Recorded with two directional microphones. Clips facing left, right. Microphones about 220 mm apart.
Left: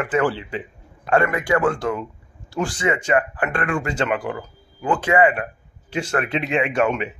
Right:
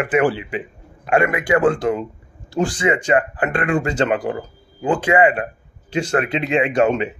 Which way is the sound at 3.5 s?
20° right (ahead or behind).